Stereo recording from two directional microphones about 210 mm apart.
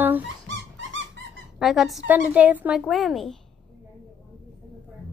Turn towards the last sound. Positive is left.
turn(degrees=0)  # may be behind; listen again after turning